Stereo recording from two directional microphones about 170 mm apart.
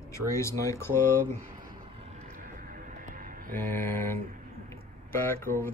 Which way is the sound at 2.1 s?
55° right (ahead or behind).